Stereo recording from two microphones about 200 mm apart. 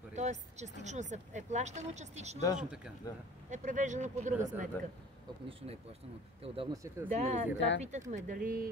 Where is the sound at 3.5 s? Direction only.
35° right (ahead or behind).